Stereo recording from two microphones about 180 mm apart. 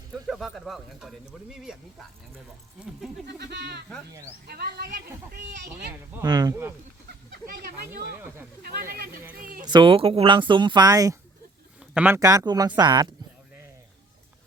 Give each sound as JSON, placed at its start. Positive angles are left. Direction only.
{"t": 0.1, "sound": "speech", "side_deg": 0}
{"t": 3.2, "sound": "speech", "side_deg": -65}
{"t": 6.2, "sound": "speech", "side_deg": -20}
{"t": 7.4, "sound": "a sound", "side_deg": -60}
{"t": 7.9, "sound": "speech", "side_deg": -10}
{"t": 8.6, "sound": "speech", "side_deg": -60}
{"t": 9.4, "sound": "a sound", "side_deg": -50}
{"t": 9.6, "sound": "speech", "side_deg": -25}
{"t": 11.8, "sound": "speech", "side_deg": -10}